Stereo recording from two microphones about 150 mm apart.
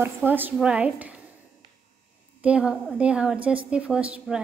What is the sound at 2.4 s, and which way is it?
A woman's voice, 10° right (ahead or behind).